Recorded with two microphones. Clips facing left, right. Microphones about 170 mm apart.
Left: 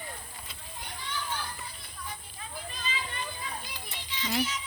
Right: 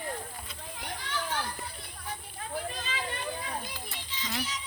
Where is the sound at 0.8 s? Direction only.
80° right.